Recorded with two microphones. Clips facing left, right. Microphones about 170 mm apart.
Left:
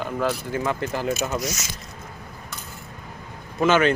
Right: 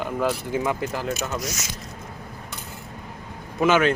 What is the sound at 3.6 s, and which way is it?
Speech, 10° right (ahead or behind).